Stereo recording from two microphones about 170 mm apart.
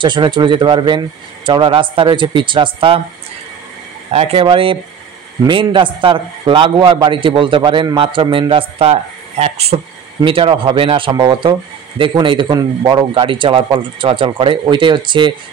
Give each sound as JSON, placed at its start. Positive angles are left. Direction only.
{"t": 0.0, "sound": "a man's voice", "side_deg": -25}
{"t": 4.1, "sound": "a man's voice", "side_deg": -35}